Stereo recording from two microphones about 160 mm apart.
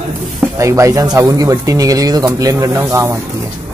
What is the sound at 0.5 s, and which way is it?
Speech, 20° right (ahead or behind).